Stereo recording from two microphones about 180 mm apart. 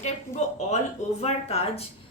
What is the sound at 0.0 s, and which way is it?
A woman's voice, 40° left (ahead or behind).